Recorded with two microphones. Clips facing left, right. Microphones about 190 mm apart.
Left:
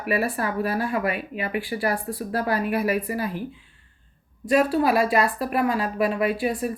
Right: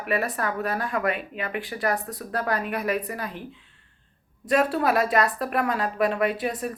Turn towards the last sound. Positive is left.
turn(degrees=5)  # may be behind; listen again after turning